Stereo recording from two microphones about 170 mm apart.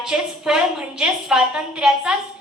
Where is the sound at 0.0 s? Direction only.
5° right (ahead or behind).